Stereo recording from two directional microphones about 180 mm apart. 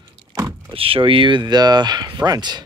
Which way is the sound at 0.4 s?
15° right (ahead or behind).